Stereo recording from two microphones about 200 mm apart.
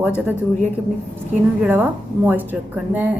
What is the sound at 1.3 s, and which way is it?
A woman's voice, 10° right (ahead or behind).